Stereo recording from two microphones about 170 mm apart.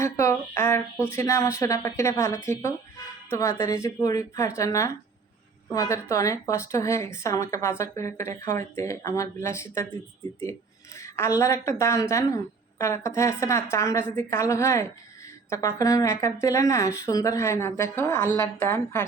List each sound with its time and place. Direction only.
0.0 s a sound: 15° left (ahead or behind)
3.2 s speech: 15° left (ahead or behind)
10.9 s speech: 20° left (ahead or behind)